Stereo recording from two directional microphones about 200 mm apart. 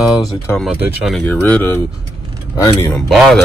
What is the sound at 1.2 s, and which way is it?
Speech, 10° left (ahead or behind).